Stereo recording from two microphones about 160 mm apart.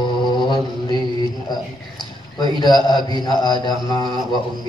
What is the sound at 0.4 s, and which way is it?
Mantra, 30° left (ahead or behind).